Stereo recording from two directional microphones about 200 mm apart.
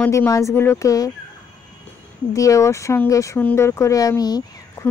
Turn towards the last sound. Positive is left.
turn(degrees=20)  # may be behind; listen again after turning